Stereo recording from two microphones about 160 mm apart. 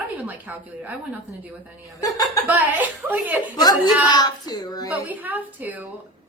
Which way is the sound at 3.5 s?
25° left (ahead or behind).